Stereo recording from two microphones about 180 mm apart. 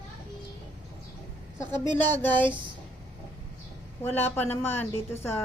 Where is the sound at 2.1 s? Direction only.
10° left (ahead or behind).